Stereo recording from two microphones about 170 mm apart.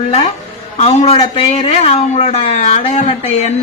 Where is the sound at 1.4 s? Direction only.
40° left (ahead or behind).